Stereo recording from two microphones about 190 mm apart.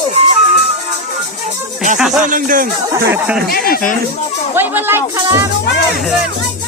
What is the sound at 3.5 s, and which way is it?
Speech, 50° left (ahead or behind).